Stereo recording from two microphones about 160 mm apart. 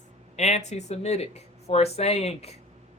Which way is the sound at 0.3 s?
45° left (ahead or behind).